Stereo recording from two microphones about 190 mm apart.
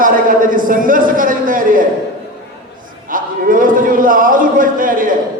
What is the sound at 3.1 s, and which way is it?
A man's voice, 45° right (ahead or behind).